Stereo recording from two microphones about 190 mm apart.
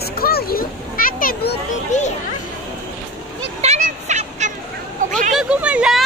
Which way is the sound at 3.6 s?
35° right (ahead or behind).